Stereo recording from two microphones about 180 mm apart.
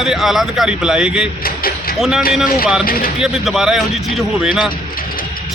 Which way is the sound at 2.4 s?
55° left (ahead or behind).